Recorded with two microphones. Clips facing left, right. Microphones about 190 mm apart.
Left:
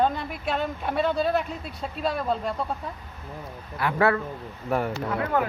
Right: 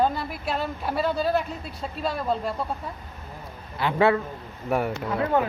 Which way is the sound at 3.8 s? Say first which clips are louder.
Right 2 dB; 25° right (ahead or behind).